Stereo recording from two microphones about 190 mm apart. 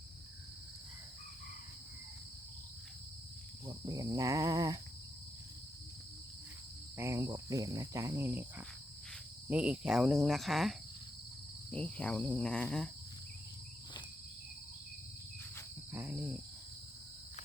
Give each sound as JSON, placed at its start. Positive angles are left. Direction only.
{"t": 3.7, "sound": "cricket", "side_deg": -20}
{"t": 6.9, "sound": "cricket", "side_deg": -15}
{"t": 15.9, "sound": "cricket", "side_deg": -10}